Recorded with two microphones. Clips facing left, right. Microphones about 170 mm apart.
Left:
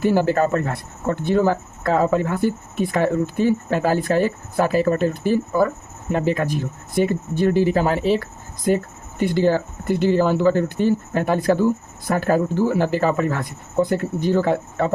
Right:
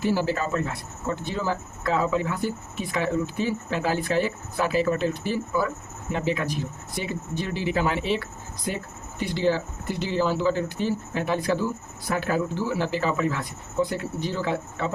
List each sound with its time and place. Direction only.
0.0 s a man's voice: 55° left (ahead or behind)